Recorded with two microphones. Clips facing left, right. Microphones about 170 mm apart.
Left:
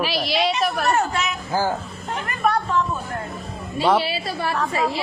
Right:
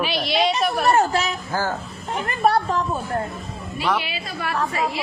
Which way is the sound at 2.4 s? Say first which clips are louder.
Right 1 dB; 35° right (ahead or behind).